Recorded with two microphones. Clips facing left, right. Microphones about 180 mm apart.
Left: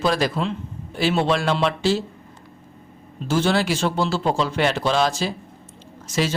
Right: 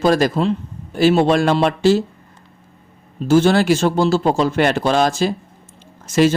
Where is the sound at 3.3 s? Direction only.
45° right (ahead or behind).